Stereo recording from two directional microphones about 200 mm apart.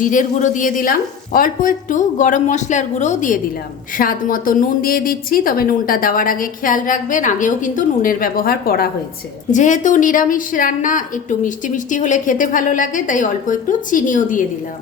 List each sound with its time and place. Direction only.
0.0 s a woman's voice: 40° left (ahead or behind)